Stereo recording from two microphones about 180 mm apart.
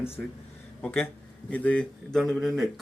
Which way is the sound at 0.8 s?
10° left (ahead or behind).